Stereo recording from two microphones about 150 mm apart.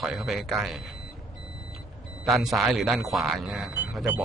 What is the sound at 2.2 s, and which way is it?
Speech, centre (ahead or behind).